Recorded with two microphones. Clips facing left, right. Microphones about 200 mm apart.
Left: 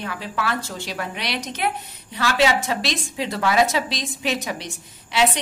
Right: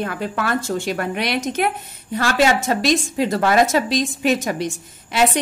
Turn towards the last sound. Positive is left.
turn(degrees=-50)  # may be behind; listen again after turning